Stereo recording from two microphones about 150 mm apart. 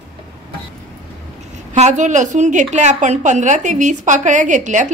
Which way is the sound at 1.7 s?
50° right (ahead or behind).